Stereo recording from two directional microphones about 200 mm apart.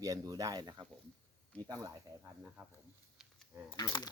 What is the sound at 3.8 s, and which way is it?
Speech, 20° left (ahead or behind).